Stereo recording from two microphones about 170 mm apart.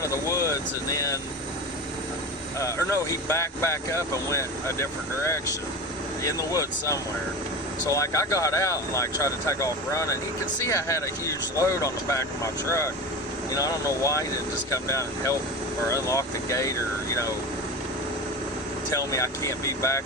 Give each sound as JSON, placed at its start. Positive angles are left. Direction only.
{"t": 0.0, "sound": "speech", "side_deg": 20}
{"t": 2.6, "sound": "speech", "side_deg": 20}
{"t": 13.5, "sound": "speech", "side_deg": 20}
{"t": 18.9, "sound": "speech", "side_deg": 20}